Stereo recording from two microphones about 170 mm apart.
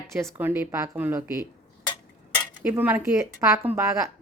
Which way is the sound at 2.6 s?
10° right (ahead or behind).